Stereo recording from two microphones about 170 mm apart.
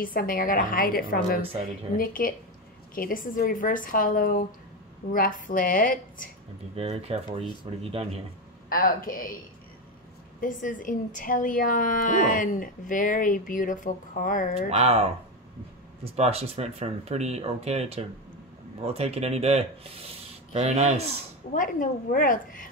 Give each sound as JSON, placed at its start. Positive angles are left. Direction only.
{"t": 0.0, "sound": "a woman's voice", "side_deg": 55}
{"t": 6.7, "sound": "speech", "side_deg": -35}
{"t": 8.6, "sound": "a woman's voice", "side_deg": 55}
{"t": 10.4, "sound": "a woman's voice", "side_deg": 50}
{"t": 14.7, "sound": "speech", "side_deg": -40}
{"t": 21.5, "sound": "a woman's voice", "side_deg": 55}